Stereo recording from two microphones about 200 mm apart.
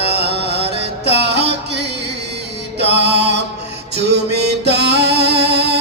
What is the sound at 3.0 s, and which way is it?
Music, 30° left (ahead or behind).